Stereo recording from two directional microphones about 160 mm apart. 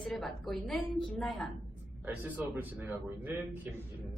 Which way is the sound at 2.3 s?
10° right (ahead or behind).